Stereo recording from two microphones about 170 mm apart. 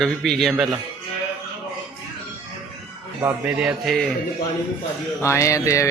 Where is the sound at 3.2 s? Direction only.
10° right (ahead or behind).